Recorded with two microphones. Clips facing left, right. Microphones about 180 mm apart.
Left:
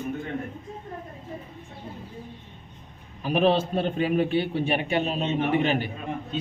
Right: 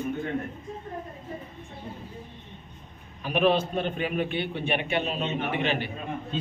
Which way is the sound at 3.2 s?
35° left (ahead or behind).